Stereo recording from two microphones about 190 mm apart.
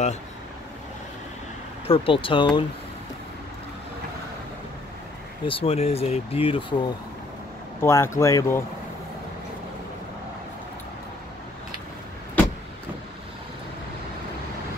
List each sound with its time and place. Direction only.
1.9 s speech: 30° left (ahead or behind)
5.5 s speech: 30° left (ahead or behind)
7.8 s speech: 15° left (ahead or behind)